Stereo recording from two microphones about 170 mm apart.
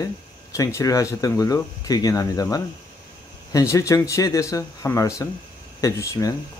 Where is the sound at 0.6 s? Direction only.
20° left (ahead or behind).